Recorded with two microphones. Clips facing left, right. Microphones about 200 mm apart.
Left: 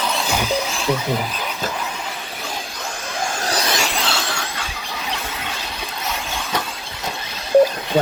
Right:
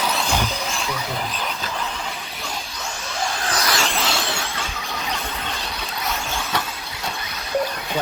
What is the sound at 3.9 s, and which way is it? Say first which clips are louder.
Vehicle: even; centre (ahead or behind).